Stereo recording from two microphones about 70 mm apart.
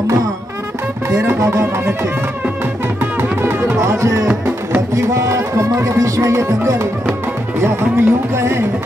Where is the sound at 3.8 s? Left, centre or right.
Right.